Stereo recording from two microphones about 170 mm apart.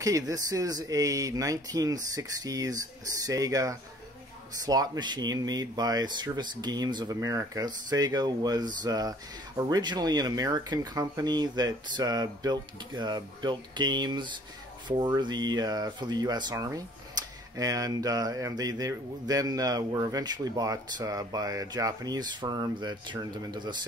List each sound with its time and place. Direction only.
0.0 s speech: 20° right (ahead or behind)